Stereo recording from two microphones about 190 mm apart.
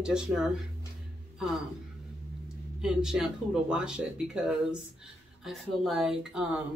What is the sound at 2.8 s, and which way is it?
Speech, 5° right (ahead or behind).